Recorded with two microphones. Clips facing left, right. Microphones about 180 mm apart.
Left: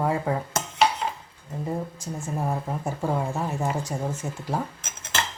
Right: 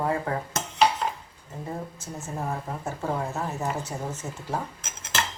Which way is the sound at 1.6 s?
15° left (ahead or behind).